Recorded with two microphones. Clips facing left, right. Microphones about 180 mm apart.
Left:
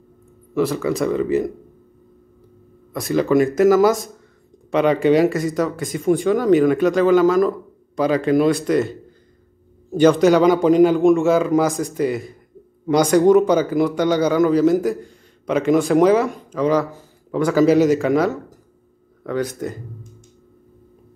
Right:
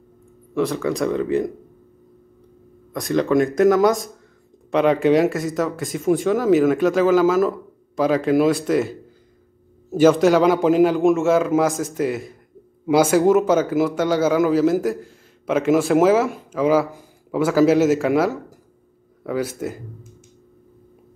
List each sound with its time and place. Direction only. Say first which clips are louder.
0.6 s speech: left 1 dB; centre (ahead or behind)
2.9 s speech: left 1 dB; 5° left (ahead or behind)